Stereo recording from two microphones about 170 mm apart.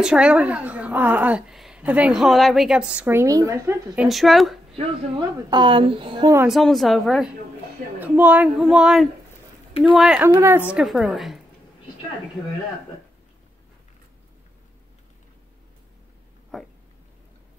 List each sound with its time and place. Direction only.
0.0 s a woman's voice: 5° right (ahead or behind)
5.5 s speech: 30° right (ahead or behind)
6.4 s a woman's voice: centre (ahead or behind)
10.7 s speech: 5° right (ahead or behind)
16.5 s a sound: centre (ahead or behind)